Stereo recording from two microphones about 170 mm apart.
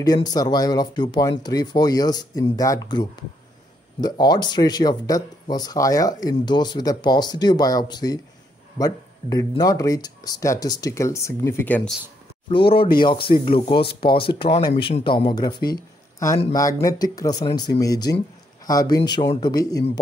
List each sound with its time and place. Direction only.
0.0 s speech: 20° left (ahead or behind)
12.4 s speech: 30° left (ahead or behind)